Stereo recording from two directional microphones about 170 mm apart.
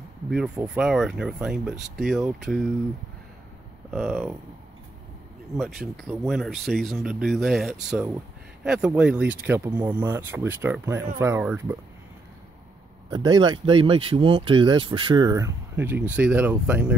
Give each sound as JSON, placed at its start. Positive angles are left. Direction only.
{"t": 0.3, "sound": "speech", "side_deg": -5}
{"t": 3.9, "sound": "speech", "side_deg": 0}
{"t": 5.6, "sound": "speech", "side_deg": 0}
{"t": 13.1, "sound": "speech", "side_deg": -25}